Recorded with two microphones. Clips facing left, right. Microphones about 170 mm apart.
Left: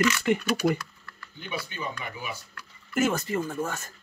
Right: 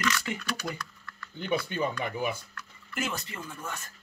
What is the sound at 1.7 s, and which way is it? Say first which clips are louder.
Speech: right 5 dB; 50° right (ahead or behind).